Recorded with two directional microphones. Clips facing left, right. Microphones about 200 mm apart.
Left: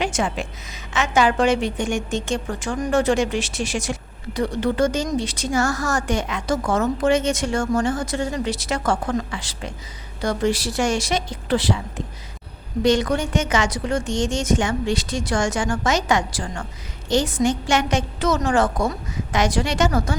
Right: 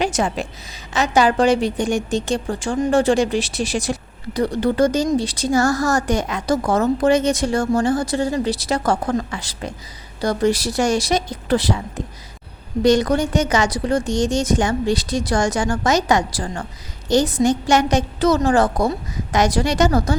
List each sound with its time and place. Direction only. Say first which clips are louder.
0.0 s a woman's voice: right 3 dB; 40° right (ahead or behind)